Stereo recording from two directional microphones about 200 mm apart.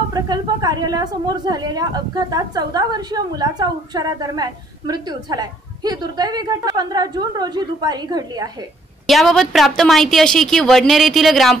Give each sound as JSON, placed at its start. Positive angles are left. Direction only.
{"t": 0.1, "sound": "a woman's voice", "side_deg": -20}
{"t": 9.0, "sound": "a woman's voice", "side_deg": 0}